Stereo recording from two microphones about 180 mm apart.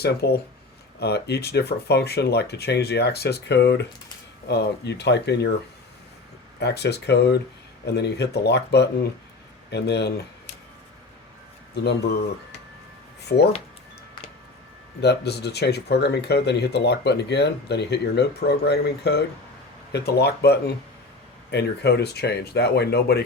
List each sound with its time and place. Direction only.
0.0 s speech: 60° left (ahead or behind)
6.6 s speech: 70° left (ahead or behind)
11.7 s speech: 65° left (ahead or behind)
13.3 s speech: 60° left (ahead or behind)
15.0 s speech: 70° left (ahead or behind)